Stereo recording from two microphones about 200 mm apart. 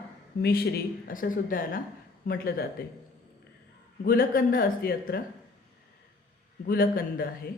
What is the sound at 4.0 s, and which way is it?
Speech, 45° left (ahead or behind).